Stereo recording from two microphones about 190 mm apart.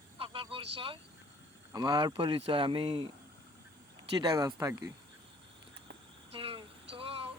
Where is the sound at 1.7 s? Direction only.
20° right (ahead or behind).